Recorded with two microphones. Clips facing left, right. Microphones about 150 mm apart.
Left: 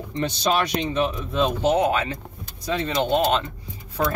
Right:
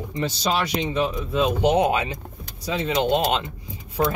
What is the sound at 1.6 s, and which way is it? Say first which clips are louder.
Speech: right 1 dB; 20° right (ahead or behind).